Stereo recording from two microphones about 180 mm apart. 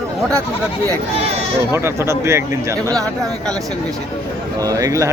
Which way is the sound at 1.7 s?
15° right (ahead or behind).